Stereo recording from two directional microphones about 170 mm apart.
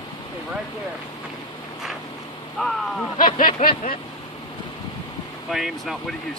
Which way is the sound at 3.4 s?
50° left (ahead or behind).